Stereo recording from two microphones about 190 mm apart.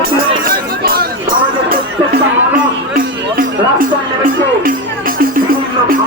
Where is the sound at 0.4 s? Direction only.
50° right (ahead or behind).